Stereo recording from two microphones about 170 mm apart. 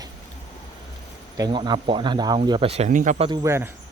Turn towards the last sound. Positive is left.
turn(degrees=-15)  # may be behind; listen again after turning